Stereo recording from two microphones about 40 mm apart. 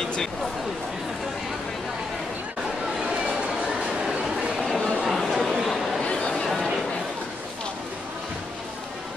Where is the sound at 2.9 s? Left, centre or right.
Centre.